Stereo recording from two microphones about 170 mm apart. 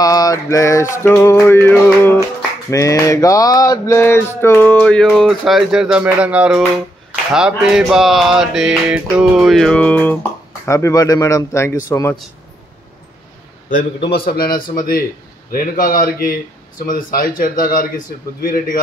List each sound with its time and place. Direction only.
0.0 s a sound: 20° left (ahead or behind)
0.9 s male singing: 15° left (ahead or behind); by 6.6 s 5° right (ahead or behind)
7.3 s mantra: 5° right (ahead or behind)
10.6 s male singing: 15° left (ahead or behind)
13.9 s a man's voice: 30° left (ahead or behind)
14.2 s speech: 60° left (ahead or behind)